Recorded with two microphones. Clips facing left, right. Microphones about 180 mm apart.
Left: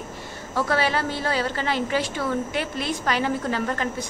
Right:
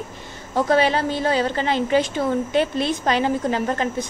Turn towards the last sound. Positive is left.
turn(degrees=-20)  # may be behind; listen again after turning